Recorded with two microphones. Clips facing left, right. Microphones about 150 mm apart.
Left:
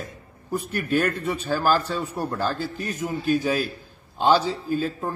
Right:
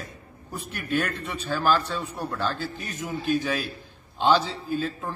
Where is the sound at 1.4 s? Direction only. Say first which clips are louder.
Left 1 dB; 35° left (ahead or behind).